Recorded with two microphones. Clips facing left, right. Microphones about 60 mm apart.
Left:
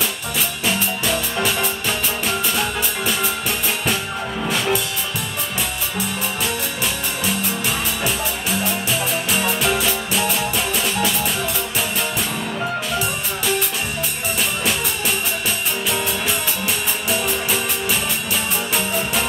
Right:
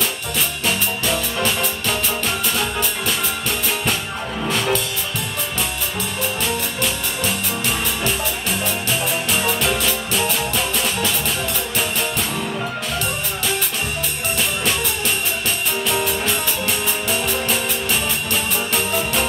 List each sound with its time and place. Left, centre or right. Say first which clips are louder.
1.0 s music: even; centre
4.4 s music: right 1 dB; centre
9.6 s music: left 1 dB; centre